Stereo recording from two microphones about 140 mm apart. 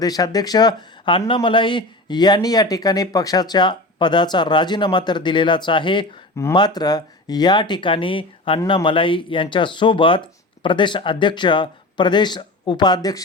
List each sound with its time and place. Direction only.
0.0 s speech: 30° left (ahead or behind)